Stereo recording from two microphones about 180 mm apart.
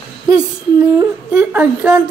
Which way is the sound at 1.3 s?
10° right (ahead or behind).